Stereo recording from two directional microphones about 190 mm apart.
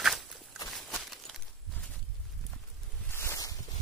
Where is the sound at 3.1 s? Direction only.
15° left (ahead or behind).